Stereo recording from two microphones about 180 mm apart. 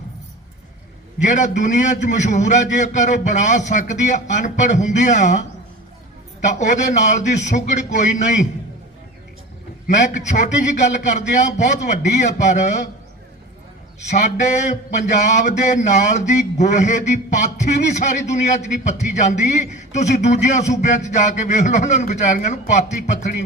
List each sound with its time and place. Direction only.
1.2 s a man's voice: 45° left (ahead or behind)
6.4 s a man's voice: 40° left (ahead or behind)
9.8 s a man's voice: 45° left (ahead or behind)
14.1 s a man's voice: 40° left (ahead or behind)